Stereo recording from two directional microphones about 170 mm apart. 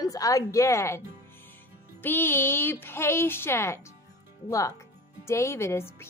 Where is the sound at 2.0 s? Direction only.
10° left (ahead or behind).